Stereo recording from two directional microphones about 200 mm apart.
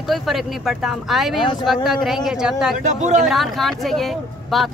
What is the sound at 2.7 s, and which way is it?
Speech, 40° right (ahead or behind).